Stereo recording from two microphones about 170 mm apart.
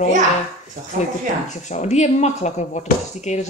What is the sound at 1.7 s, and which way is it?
Speech, 45° left (ahead or behind).